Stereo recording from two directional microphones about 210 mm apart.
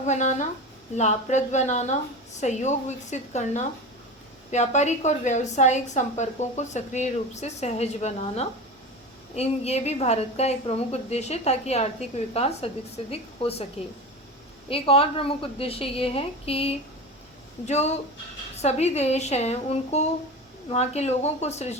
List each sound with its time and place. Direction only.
0.0 s a woman's voice: 35° left (ahead or behind)
14.7 s a woman's voice: 25° left (ahead or behind)